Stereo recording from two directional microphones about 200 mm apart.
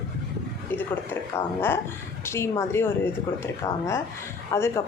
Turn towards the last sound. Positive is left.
turn(degrees=15)  # may be behind; listen again after turning